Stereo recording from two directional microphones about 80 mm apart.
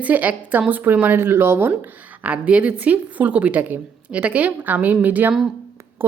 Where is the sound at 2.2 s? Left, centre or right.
Centre.